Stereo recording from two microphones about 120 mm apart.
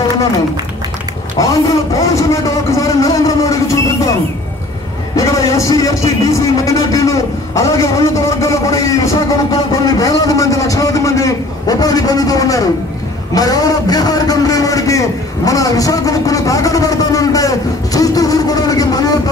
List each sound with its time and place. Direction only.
1.4 s a man's voice: 30° left (ahead or behind)
5.1 s a man's voice: 25° left (ahead or behind)